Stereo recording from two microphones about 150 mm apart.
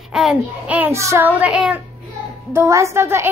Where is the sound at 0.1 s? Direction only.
5° right (ahead or behind).